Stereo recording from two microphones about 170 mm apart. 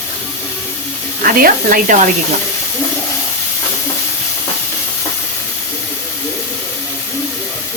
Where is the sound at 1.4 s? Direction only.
55° right (ahead or behind).